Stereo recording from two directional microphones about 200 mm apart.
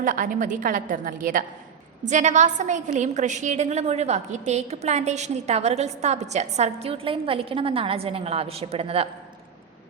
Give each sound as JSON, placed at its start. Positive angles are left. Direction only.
{"t": 0.0, "sound": "a woman's voice", "side_deg": -40}